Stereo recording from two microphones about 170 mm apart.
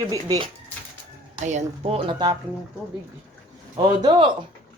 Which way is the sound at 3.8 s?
25° right (ahead or behind).